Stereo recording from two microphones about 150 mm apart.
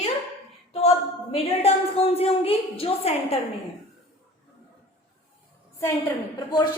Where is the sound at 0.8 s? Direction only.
40° left (ahead or behind).